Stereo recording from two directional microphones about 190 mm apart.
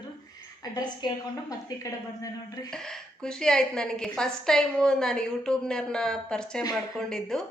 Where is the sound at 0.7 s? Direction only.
20° left (ahead or behind).